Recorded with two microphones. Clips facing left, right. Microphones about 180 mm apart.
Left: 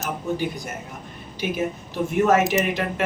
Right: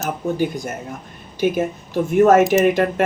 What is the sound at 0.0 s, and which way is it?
Speech, 45° right (ahead or behind).